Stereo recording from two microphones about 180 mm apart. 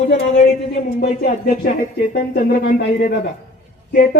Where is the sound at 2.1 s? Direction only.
55° left (ahead or behind).